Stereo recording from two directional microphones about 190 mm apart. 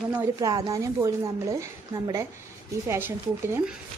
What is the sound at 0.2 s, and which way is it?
Speech, 20° right (ahead or behind).